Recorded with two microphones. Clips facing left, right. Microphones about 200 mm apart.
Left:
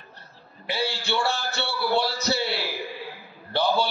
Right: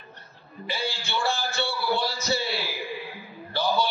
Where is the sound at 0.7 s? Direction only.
65° left (ahead or behind).